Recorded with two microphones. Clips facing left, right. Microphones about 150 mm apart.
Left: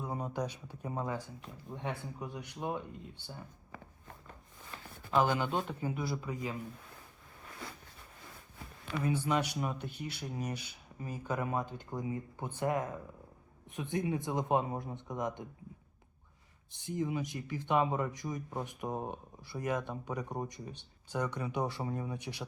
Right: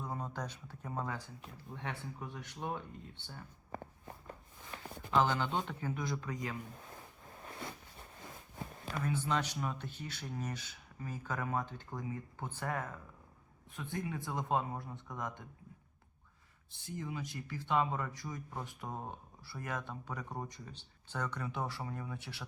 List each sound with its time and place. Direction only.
0.0 s speech: 10° left (ahead or behind)
3.7 s walk: 45° right (ahead or behind)
5.1 s speech: 15° left (ahead or behind)
8.5 s a sound: 45° right (ahead or behind)
9.0 s speech: 15° left (ahead or behind)
16.8 s speech: 20° left (ahead or behind)